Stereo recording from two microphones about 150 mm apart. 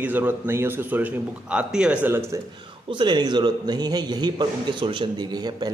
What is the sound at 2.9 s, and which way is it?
A man's voice, 30° right (ahead or behind).